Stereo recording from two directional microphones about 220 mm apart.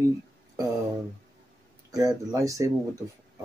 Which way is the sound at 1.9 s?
15° right (ahead or behind).